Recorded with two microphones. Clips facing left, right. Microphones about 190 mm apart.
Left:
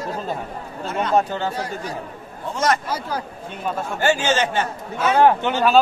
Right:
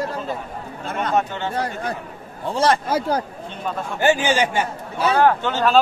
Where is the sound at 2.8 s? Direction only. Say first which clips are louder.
Right 5 dB; 45° right (ahead or behind).